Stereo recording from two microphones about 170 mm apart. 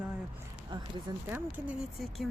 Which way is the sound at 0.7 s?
25° right (ahead or behind).